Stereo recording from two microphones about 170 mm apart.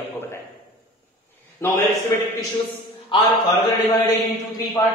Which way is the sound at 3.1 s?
30° left (ahead or behind).